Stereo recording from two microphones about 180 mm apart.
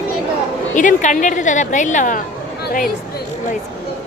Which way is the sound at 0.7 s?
45° left (ahead or behind).